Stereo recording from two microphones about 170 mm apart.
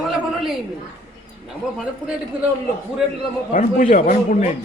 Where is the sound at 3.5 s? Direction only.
50° left (ahead or behind).